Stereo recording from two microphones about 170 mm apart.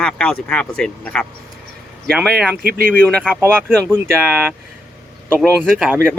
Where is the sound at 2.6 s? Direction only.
60° right (ahead or behind).